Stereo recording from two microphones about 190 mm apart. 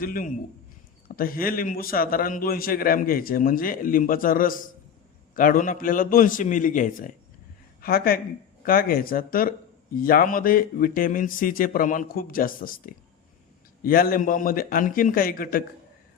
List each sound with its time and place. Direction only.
0.0 s a man's voice: 50° left (ahead or behind)